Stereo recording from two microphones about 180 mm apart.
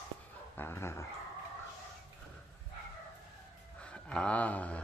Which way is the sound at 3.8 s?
5° left (ahead or behind).